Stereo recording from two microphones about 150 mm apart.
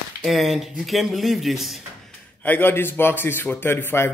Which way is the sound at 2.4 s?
10° left (ahead or behind).